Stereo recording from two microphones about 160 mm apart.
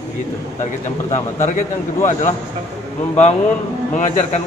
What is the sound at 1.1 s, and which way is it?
A man's voice, 50° left (ahead or behind).